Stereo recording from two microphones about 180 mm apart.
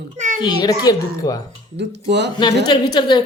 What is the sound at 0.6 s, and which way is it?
Speech, 20° left (ahead or behind).